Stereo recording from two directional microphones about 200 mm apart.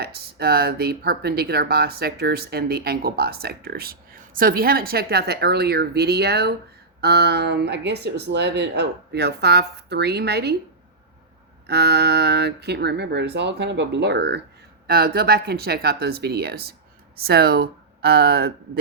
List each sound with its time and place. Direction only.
0.0 s speech: 50° right (ahead or behind)
11.6 s speech: 55° right (ahead or behind)